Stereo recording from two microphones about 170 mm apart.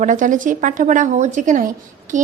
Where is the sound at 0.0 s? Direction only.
50° right (ahead or behind).